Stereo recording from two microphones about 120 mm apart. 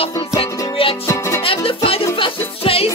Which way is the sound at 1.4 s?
50° left (ahead or behind).